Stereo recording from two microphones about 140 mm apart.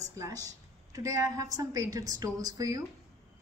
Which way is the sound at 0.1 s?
25° right (ahead or behind).